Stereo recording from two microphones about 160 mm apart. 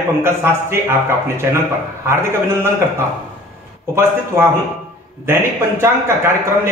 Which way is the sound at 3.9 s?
15° right (ahead or behind).